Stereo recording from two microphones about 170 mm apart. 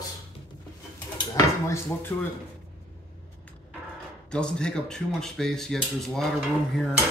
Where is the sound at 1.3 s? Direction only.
15° left (ahead or behind).